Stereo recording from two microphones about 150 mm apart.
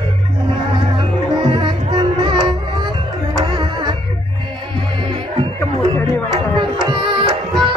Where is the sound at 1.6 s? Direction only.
30° right (ahead or behind).